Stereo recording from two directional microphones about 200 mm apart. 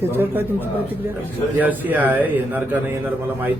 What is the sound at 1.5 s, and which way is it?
A woman's voice, 10° right (ahead or behind).